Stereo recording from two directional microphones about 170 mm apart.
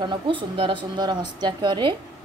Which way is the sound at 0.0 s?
30° right (ahead or behind).